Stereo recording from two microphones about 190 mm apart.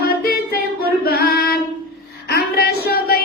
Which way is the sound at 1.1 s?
50° left (ahead or behind).